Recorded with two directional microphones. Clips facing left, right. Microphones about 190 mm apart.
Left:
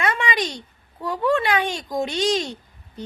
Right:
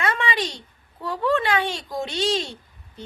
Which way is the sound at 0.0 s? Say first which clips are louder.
Left 1 dB; 15° left (ahead or behind).